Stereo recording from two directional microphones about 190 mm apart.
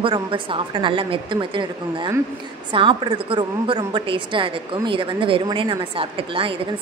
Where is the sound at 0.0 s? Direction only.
25° right (ahead or behind).